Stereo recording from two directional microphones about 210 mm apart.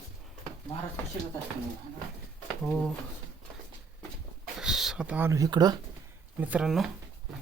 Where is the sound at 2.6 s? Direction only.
5° left (ahead or behind).